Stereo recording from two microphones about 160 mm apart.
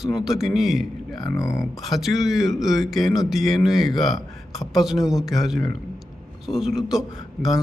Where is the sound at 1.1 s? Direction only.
25° left (ahead or behind).